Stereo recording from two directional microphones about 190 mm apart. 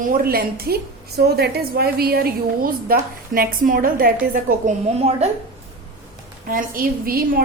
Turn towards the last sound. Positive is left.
turn(degrees=-50)  # may be behind; listen again after turning